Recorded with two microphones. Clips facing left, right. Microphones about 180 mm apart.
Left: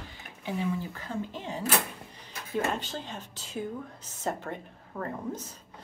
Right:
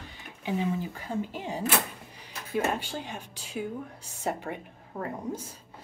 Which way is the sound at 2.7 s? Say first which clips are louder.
Right 1 dB; 10° right (ahead or behind).